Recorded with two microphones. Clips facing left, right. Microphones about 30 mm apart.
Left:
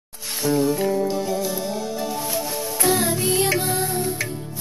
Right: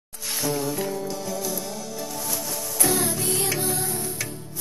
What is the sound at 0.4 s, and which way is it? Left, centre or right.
Music, centre.